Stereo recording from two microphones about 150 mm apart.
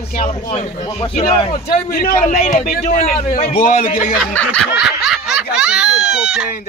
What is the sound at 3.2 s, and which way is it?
Speech, 45° left (ahead or behind).